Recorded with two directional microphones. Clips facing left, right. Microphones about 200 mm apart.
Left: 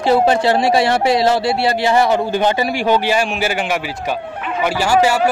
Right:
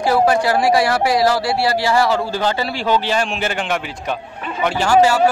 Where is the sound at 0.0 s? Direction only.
25° left (ahead or behind).